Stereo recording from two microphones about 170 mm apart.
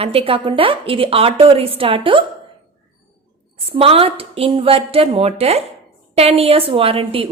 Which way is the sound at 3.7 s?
35° right (ahead or behind).